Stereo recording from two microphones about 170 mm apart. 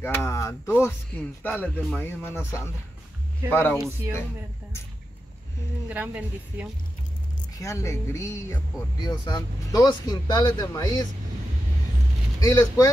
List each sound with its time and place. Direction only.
0.0 s speech: 15° left (ahead or behind)
5.9 s a woman's voice: 10° right (ahead or behind)
7.5 s speech: 20° left (ahead or behind)
12.4 s speech: 20° left (ahead or behind)